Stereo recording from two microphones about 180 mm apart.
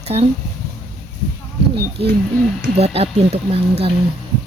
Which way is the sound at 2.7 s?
35° right (ahead or behind).